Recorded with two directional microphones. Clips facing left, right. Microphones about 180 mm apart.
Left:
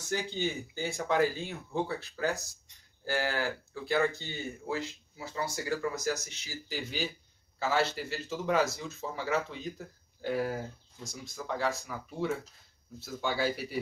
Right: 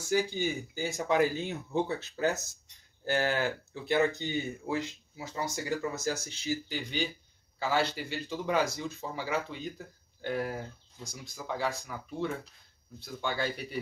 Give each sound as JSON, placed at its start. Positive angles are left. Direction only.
{"t": 0.1, "sound": "speech", "side_deg": -10}
{"t": 6.0, "sound": "speech", "side_deg": -30}
{"t": 6.7, "sound": "speech", "side_deg": 5}